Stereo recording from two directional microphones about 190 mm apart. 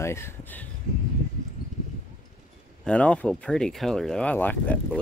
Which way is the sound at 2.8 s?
5° left (ahead or behind).